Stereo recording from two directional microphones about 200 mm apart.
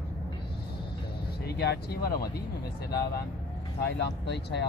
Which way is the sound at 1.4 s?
55° left (ahead or behind).